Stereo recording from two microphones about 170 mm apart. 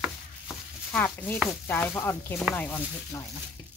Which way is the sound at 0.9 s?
10° left (ahead or behind).